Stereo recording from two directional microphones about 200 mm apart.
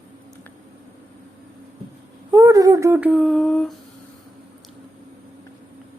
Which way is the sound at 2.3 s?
15° right (ahead or behind).